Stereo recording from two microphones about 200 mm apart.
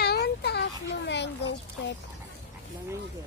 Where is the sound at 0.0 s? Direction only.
55° left (ahead or behind).